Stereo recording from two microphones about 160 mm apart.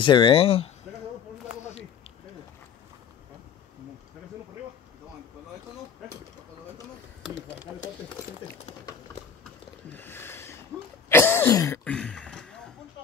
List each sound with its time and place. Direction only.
0.0 s speech: 30° left (ahead or behind)
9.9 s a sound: 15° left (ahead or behind)
11.1 s cough: 15° left (ahead or behind)
11.8 s throat clearing: 5° left (ahead or behind)